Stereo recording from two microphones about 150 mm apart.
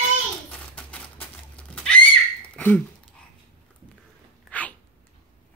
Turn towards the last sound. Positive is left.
turn(degrees=10)  # may be behind; listen again after turning